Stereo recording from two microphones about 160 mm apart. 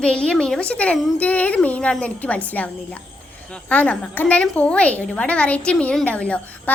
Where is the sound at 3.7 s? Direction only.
10° left (ahead or behind).